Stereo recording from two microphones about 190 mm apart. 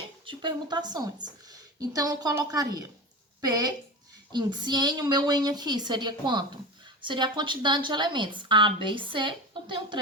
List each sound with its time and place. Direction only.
0.3 s a woman's voice: 25° right (ahead or behind)